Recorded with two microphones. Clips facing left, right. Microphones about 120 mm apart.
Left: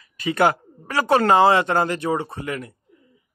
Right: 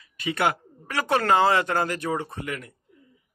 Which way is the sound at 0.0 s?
40° left (ahead or behind).